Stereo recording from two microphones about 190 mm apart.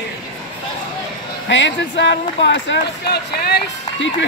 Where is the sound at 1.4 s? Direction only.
70° left (ahead or behind).